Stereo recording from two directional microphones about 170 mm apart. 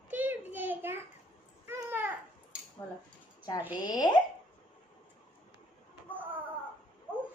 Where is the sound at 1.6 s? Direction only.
10° right (ahead or behind).